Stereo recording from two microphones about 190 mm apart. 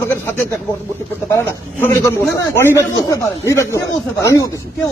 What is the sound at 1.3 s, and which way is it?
A man's voice, 10° left (ahead or behind).